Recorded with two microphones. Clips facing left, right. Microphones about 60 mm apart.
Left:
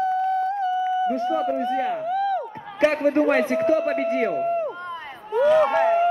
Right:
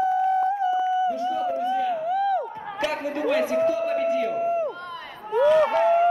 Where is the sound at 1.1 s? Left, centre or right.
Left.